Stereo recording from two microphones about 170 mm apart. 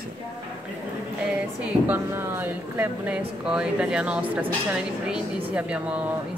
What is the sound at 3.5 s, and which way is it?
A woman's voice, 5° right (ahead or behind).